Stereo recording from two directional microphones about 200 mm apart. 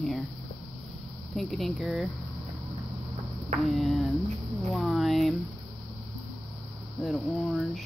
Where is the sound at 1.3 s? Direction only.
Centre (ahead or behind).